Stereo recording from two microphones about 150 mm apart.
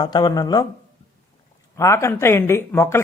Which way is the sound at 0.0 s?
30° left (ahead or behind).